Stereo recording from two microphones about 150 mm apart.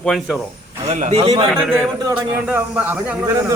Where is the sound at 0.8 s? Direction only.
45° right (ahead or behind).